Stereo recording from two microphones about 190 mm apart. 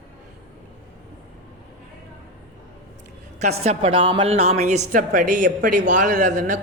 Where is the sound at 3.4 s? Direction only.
35° right (ahead or behind).